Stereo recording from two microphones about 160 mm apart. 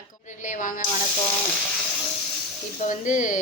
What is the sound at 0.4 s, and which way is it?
Speech, 55° left (ahead or behind).